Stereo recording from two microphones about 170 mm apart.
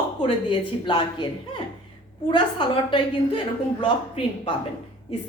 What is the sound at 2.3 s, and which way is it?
A woman's voice, 30° left (ahead or behind).